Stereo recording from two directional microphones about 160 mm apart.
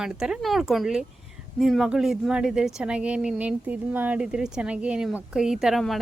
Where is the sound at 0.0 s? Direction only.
5° right (ahead or behind).